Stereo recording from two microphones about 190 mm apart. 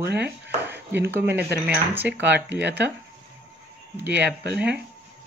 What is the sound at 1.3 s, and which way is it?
Speech, 60° right (ahead or behind).